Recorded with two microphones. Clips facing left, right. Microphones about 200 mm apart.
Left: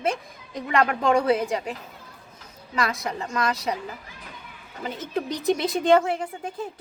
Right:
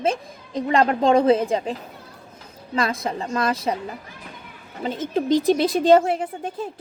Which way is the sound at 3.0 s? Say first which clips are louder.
Right 3 dB; 30° right (ahead or behind).